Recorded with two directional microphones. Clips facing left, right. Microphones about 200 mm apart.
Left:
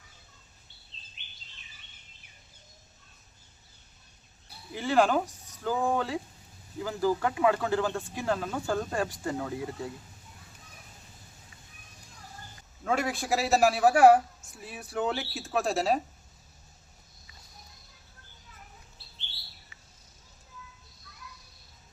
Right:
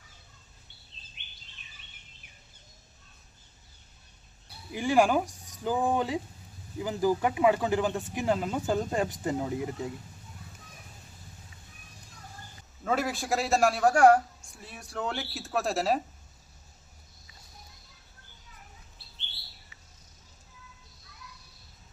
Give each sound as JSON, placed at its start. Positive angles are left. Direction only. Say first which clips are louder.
{"t": 4.7, "sound": "speech", "louder": "right 1 dB", "side_deg": -15}
{"t": 12.8, "sound": "a man's voice", "louder": "even", "side_deg": 0}